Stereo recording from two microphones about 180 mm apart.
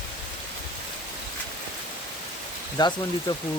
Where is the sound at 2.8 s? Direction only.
25° left (ahead or behind).